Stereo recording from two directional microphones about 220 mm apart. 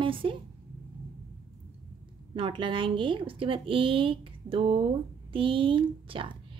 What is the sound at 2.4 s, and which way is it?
Speech, 20° right (ahead or behind).